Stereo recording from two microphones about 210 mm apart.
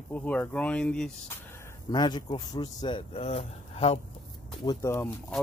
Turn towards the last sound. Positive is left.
turn(degrees=10)  # may be behind; listen again after turning